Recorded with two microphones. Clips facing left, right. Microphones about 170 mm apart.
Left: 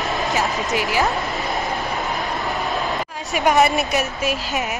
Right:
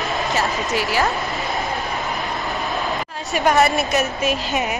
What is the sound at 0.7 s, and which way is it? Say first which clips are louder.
Speech: even; 20° left (ahead or behind).